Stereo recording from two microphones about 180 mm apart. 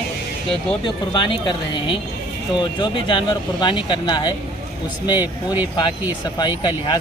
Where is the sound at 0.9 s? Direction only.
25° left (ahead or behind).